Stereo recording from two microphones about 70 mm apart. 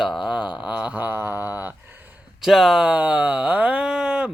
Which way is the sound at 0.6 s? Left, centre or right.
Centre.